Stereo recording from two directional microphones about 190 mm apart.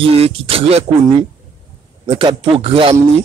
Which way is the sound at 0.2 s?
30° right (ahead or behind).